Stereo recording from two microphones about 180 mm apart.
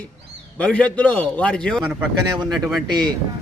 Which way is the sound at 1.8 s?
10° right (ahead or behind).